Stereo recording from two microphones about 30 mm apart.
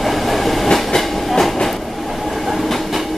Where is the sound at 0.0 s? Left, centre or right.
Centre.